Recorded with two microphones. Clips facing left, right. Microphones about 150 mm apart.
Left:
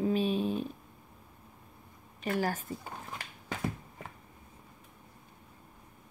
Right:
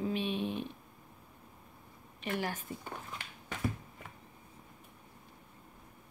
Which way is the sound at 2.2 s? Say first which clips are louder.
Left 5 dB; 40° left (ahead or behind).